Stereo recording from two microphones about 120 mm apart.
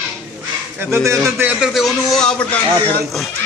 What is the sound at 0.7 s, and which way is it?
Speech, 25° right (ahead or behind).